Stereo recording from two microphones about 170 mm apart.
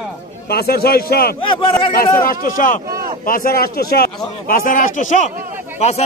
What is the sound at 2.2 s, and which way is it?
A man's voice, 55° left (ahead or behind).